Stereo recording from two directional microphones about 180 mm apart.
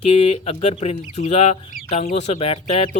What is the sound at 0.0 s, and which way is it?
Speech, 35° left (ahead or behind).